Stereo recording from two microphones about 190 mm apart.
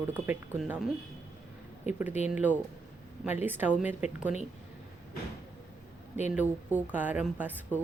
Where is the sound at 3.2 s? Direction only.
10° right (ahead or behind).